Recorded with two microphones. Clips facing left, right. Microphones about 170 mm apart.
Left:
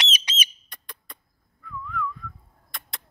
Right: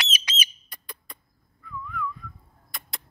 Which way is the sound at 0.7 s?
5° right (ahead or behind).